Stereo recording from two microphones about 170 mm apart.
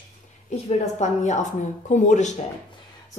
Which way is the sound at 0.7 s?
45° left (ahead or behind).